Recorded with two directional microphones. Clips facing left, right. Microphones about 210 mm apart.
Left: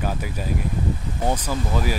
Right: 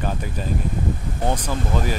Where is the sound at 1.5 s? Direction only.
10° left (ahead or behind).